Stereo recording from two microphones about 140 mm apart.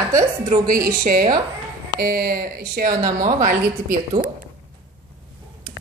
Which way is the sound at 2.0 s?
90° right.